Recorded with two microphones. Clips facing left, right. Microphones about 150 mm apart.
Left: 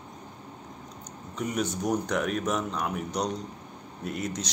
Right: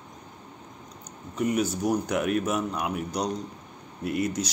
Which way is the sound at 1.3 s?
5° right (ahead or behind).